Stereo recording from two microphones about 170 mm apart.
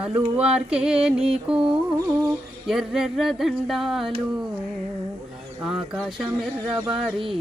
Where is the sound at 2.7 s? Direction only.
Centre (ahead or behind).